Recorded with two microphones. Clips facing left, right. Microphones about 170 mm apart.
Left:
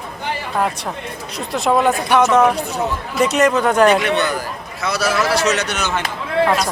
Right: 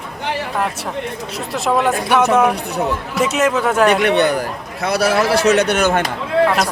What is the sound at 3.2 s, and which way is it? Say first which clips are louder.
Speech: left 2 dB; 5° right (ahead or behind).